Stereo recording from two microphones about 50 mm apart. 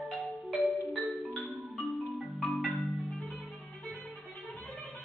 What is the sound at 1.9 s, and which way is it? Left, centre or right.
Marimba, centre.